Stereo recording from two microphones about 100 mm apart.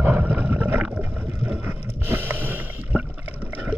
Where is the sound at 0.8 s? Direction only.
10° right (ahead or behind).